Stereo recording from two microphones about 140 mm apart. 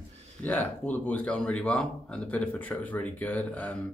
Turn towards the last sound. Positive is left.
turn(degrees=10)  # may be behind; listen again after turning